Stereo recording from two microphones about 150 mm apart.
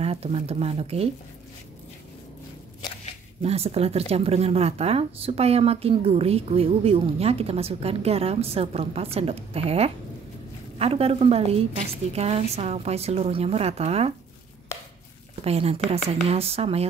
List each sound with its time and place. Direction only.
0.0 s speech: 40° right (ahead or behind)
3.4 s a woman's voice: 45° right (ahead or behind)
15.4 s speech: 40° right (ahead or behind)